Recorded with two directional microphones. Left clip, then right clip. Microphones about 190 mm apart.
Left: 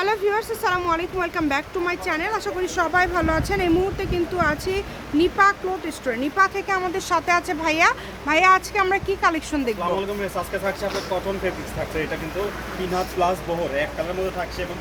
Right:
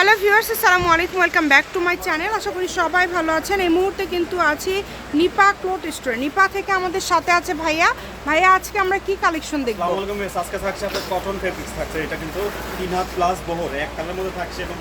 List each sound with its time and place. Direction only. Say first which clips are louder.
0.0 s speech: right 7 dB; 10° right (ahead or behind)
13.0 s speech: right 2 dB; 10° left (ahead or behind)